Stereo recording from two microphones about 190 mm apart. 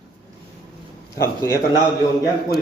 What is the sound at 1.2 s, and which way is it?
Speech, 15° left (ahead or behind).